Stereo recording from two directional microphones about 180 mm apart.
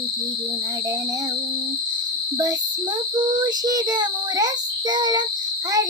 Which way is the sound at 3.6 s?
20° right (ahead or behind).